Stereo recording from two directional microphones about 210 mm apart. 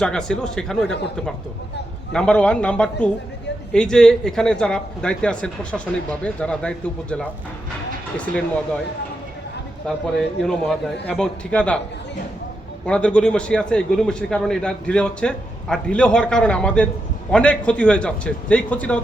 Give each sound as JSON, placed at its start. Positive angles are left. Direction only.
{"t": 0.0, "sound": "a man's voice", "side_deg": 5}
{"t": 0.9, "sound": "speech", "side_deg": 55}
{"t": 2.1, "sound": "a man's voice", "side_deg": 5}
{"t": 10.4, "sound": "a man's voice", "side_deg": 0}
{"t": 12.8, "sound": "a man's voice", "side_deg": 5}